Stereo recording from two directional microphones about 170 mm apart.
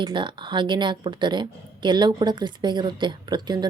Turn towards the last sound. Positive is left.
turn(degrees=-25)  # may be behind; listen again after turning